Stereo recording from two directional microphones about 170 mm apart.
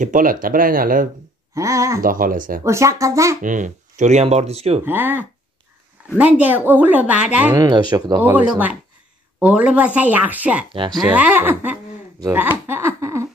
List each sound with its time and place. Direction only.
0.0 s speech: 50° right (ahead or behind)
1.5 s speech: 20° right (ahead or behind)
2.0 s speech: 55° right (ahead or behind)
2.6 s speech: 15° right (ahead or behind)
3.4 s speech: 45° right (ahead or behind)
4.8 s speech: 10° right (ahead or behind)
7.5 s speech: 25° right (ahead or behind)
8.2 s speech: 10° right (ahead or behind)
10.7 s speech: 30° right (ahead or behind)
11.0 s speech: 10° right (ahead or behind)
12.2 s a sound: 15° right (ahead or behind)